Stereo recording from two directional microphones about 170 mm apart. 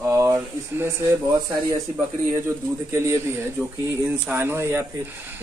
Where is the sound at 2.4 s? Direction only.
15° right (ahead or behind).